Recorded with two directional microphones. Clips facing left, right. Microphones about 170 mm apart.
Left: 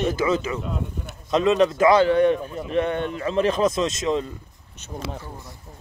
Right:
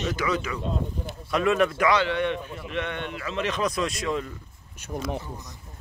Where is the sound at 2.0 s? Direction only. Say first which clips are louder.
Left 8 dB; 40° left (ahead or behind); by 4.3 s 25° left (ahead or behind).